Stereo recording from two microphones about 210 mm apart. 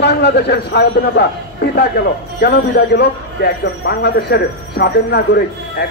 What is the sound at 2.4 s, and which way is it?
A man's voice, 50° left (ahead or behind).